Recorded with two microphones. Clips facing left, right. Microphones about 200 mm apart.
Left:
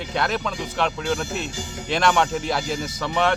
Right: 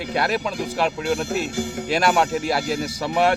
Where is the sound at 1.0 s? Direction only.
60° right (ahead or behind).